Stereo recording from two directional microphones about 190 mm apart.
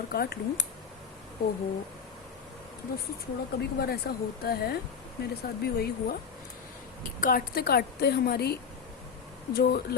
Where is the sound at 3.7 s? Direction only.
55° left (ahead or behind).